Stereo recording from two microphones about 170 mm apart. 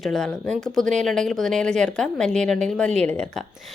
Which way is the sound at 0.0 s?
5° left (ahead or behind).